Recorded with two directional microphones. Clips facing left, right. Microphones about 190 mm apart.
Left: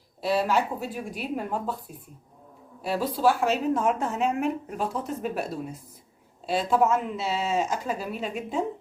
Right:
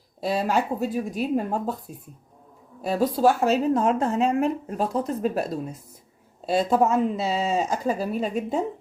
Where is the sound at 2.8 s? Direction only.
45° right (ahead or behind).